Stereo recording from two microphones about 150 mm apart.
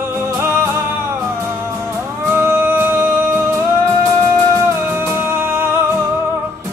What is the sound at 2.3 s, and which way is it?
Music, 15° right (ahead or behind).